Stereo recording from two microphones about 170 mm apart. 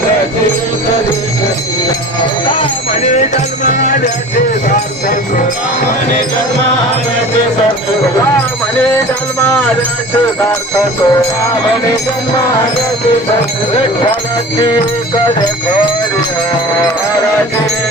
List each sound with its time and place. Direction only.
10.4 s jingle bell: 20° left (ahead or behind)